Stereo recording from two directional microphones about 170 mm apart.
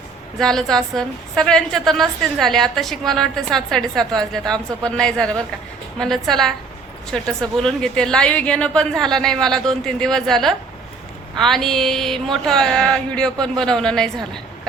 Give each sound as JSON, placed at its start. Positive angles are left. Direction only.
{"t": 0.3, "sound": "a woman's voice", "side_deg": 5}